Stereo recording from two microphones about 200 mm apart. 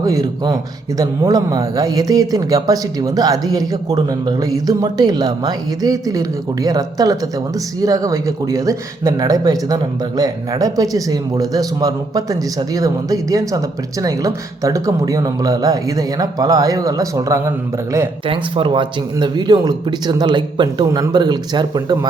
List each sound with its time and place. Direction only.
0.0 s a man's voice: 20° right (ahead or behind)